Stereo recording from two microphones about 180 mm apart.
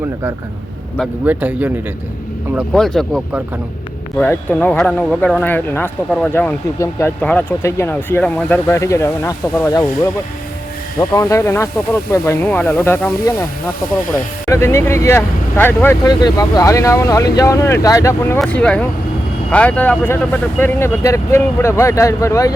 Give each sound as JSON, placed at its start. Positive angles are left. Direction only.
{"t": 0.9, "sound": "a man's voice", "side_deg": -10}
{"t": 2.6, "sound": "speech", "side_deg": 0}
{"t": 11.1, "sound": "speech", "side_deg": 15}
{"t": 14.4, "sound": "speech", "side_deg": 15}